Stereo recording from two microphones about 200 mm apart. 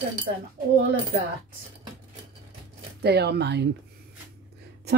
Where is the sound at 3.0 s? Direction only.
55° right (ahead or behind).